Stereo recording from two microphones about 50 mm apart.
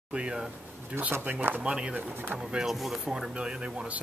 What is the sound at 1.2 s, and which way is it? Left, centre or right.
Speech, right.